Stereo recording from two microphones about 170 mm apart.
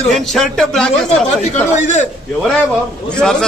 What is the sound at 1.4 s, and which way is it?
Speech, 45° left (ahead or behind).